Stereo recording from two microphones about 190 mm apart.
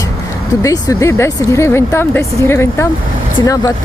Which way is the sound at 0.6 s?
15° left (ahead or behind).